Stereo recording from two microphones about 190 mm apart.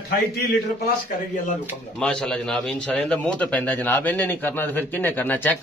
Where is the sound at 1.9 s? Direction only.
5° left (ahead or behind).